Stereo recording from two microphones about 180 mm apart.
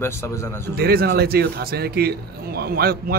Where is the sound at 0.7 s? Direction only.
60° right (ahead or behind).